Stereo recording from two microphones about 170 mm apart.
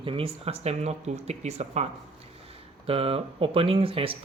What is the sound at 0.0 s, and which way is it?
Speech, 30° right (ahead or behind).